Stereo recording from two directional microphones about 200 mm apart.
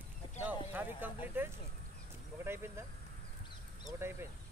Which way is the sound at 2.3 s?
10° right (ahead or behind).